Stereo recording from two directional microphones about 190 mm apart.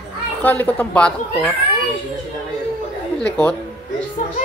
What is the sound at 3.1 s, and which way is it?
Speech, 5° left (ahead or behind).